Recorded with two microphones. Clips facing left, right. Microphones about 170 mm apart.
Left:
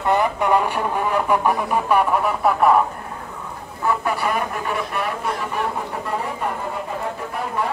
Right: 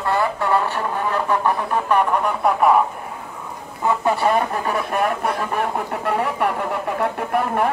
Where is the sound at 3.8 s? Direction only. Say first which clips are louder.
Right 3 dB; 25° right (ahead or behind).